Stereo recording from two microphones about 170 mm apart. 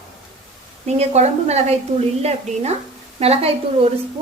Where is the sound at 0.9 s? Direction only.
40° right (ahead or behind).